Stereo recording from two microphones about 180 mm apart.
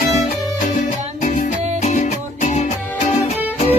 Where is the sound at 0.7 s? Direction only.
45° left (ahead or behind).